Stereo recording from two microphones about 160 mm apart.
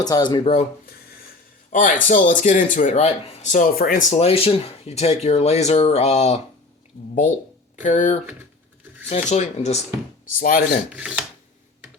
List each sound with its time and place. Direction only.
0.0 s speech: 25° left (ahead or behind)
1.7 s speech: 55° left (ahead or behind)
4.2 s speech: 40° left (ahead or behind)
10.3 s speech: 60° left (ahead or behind)
10.9 s speech: 5° right (ahead or behind)